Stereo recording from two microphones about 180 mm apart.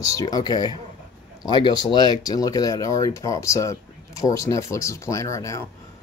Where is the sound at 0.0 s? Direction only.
20° left (ahead or behind).